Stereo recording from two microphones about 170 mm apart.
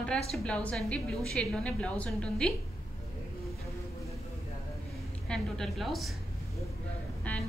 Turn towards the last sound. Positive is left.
turn(degrees=10)  # may be behind; listen again after turning